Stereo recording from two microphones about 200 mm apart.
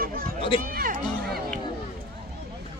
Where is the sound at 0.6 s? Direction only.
45° right (ahead or behind).